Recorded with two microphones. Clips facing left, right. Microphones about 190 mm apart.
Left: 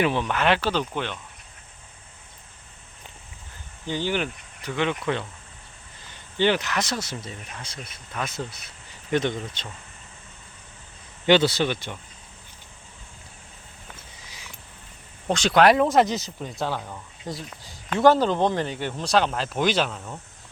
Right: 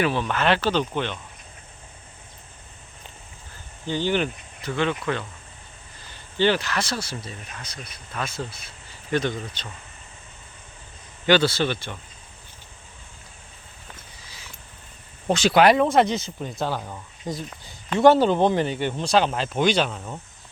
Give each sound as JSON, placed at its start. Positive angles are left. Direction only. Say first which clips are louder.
{"t": 0.0, "sound": "speech", "louder": "even", "side_deg": 15}
{"t": 3.8, "sound": "speech", "louder": "right 3 dB", "side_deg": 10}
{"t": 11.3, "sound": "speech", "louder": "even", "side_deg": 20}
{"t": 14.2, "sound": "sniff", "louder": "even", "side_deg": 15}
{"t": 15.3, "sound": "speech", "louder": "right 1 dB", "side_deg": -5}
{"t": 18.3, "sound": "speech", "louder": "right 3 dB", "side_deg": -15}
{"t": 18.9, "sound": "speech", "louder": "even", "side_deg": 0}